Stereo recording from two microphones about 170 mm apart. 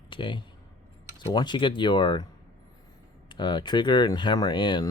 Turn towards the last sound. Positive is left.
turn(degrees=25)  # may be behind; listen again after turning